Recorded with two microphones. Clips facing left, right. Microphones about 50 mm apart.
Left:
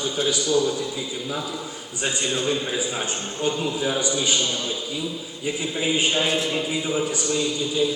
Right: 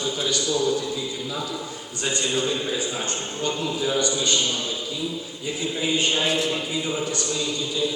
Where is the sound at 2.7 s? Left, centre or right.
Centre.